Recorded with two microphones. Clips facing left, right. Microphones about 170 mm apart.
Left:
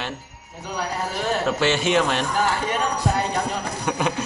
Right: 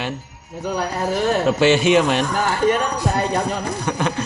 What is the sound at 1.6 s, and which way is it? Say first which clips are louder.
Speech: right 6 dB; 15° right (ahead or behind).